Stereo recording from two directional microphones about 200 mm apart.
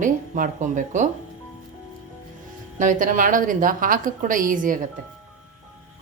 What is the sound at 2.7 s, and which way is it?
A woman's voice, 40° right (ahead or behind).